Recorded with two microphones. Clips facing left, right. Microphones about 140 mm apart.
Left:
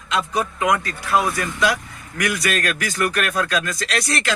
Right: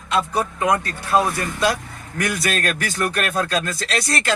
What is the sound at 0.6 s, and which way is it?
A man's voice, 25° right (ahead or behind).